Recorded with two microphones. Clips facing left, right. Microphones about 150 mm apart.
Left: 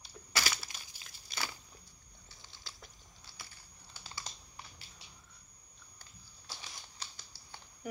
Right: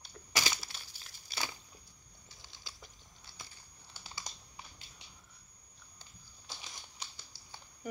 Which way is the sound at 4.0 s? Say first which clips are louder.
Even; 15° right (ahead or behind).